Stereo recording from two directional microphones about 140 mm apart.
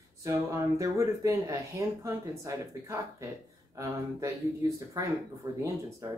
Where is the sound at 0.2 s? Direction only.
20° right (ahead or behind).